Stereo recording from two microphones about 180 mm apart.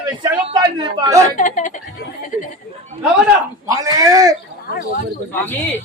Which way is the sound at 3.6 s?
20° right (ahead or behind).